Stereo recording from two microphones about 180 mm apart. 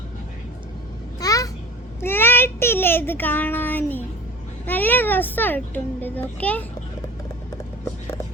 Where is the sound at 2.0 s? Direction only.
10° left (ahead or behind).